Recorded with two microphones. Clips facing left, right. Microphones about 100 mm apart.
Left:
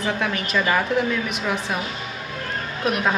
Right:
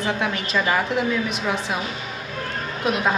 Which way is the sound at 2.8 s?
20° right (ahead or behind).